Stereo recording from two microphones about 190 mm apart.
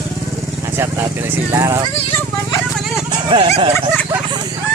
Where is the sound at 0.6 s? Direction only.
15° right (ahead or behind).